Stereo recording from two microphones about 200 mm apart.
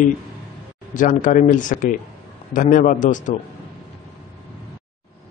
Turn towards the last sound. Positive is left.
turn(degrees=40)  # may be behind; listen again after turning